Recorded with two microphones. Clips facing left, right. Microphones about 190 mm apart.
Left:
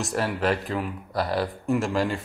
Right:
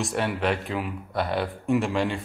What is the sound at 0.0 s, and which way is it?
Speech, centre (ahead or behind).